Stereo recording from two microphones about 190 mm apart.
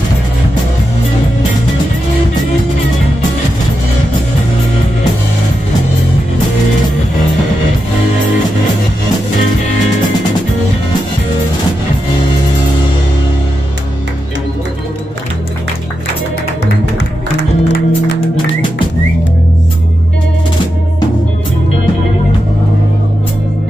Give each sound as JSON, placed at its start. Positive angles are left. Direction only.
{"t": 17.4, "sound": "music", "side_deg": 60}